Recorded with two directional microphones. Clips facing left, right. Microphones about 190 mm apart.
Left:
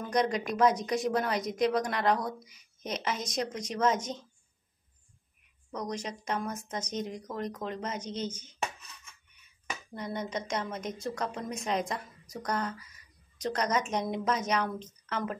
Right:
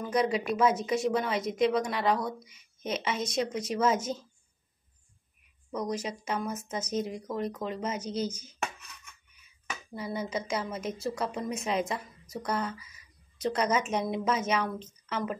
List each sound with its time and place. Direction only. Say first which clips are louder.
0.1 s speech: right 1 dB; 5° right (ahead or behind)
5.7 s speech: right 3 dB; 5° right (ahead or behind)
9.9 s speech: right 2 dB; 5° right (ahead or behind)